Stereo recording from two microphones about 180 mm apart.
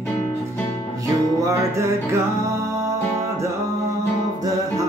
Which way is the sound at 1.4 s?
15° right (ahead or behind).